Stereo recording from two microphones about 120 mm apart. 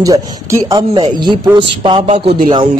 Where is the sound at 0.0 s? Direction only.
25° right (ahead or behind).